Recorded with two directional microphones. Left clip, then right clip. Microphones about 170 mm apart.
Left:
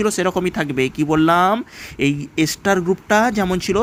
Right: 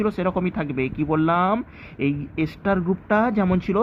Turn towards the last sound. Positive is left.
turn(degrees=35)  # may be behind; listen again after turning